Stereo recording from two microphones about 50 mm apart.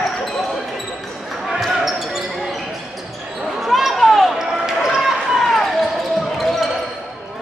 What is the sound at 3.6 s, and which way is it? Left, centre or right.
Basketball bounce, centre.